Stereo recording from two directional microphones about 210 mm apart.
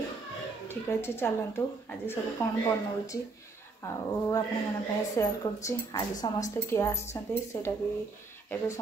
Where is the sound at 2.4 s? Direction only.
10° left (ahead or behind).